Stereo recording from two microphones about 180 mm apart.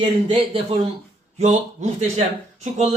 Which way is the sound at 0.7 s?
35° right (ahead or behind).